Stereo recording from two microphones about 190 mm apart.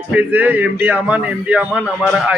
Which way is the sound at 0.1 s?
10° right (ahead or behind).